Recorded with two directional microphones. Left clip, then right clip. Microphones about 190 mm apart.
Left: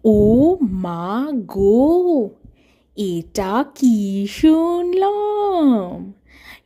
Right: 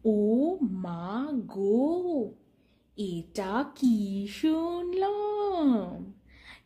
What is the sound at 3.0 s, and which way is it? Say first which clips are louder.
A woman's voice: left 12 dB; 50° left (ahead or behind).